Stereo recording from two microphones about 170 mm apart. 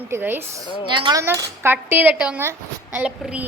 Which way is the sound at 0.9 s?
30° right (ahead or behind).